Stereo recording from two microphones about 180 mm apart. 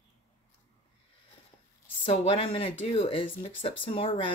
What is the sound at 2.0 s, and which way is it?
Speech, 30° left (ahead or behind).